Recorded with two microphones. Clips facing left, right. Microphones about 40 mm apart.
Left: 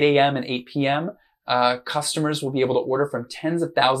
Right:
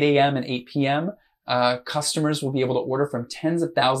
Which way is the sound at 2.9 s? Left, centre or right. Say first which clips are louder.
Left 1 dB; centre.